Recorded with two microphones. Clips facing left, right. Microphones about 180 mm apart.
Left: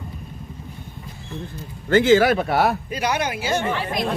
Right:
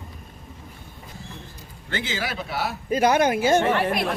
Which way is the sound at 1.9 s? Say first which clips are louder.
Left 15 dB; 50° left (ahead or behind).